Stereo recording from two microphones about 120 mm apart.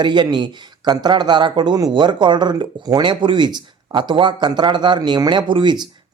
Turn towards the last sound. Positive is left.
turn(degrees=-40)  # may be behind; listen again after turning